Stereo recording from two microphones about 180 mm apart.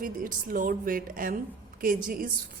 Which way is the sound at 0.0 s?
50° right (ahead or behind).